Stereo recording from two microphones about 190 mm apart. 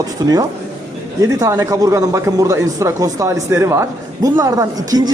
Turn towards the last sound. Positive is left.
turn(degrees=-20)  # may be behind; listen again after turning